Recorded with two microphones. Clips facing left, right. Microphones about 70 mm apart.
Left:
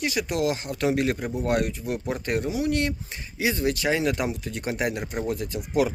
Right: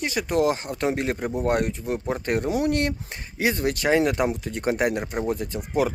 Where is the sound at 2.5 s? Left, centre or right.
Right.